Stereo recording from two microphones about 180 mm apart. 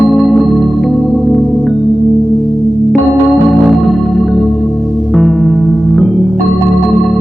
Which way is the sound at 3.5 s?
Centre (ahead or behind).